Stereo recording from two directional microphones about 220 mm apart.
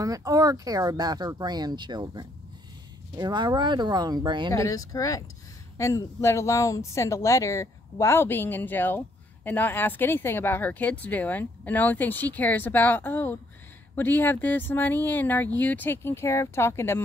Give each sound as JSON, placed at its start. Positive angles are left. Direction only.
{"t": 0.0, "sound": "speech", "side_deg": -15}
{"t": 4.5, "sound": "speech", "side_deg": 15}